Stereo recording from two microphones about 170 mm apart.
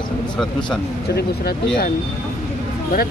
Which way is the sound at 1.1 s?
70° left (ahead or behind).